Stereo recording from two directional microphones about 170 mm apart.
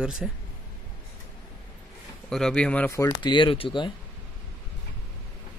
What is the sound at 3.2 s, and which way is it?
Speech, 30° left (ahead or behind).